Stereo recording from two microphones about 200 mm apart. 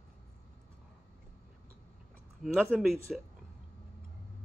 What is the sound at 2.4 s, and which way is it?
Speech, centre (ahead or behind).